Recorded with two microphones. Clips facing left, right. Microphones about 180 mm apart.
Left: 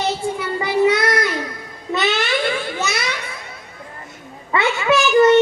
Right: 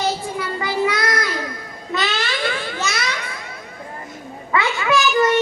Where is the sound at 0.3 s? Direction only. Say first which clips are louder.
Left 3 dB; 25° left (ahead or behind).